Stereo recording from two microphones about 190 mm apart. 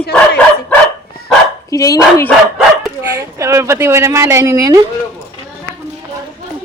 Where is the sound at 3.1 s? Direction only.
15° right (ahead or behind).